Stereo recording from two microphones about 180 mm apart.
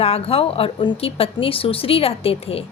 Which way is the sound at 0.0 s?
35° left (ahead or behind).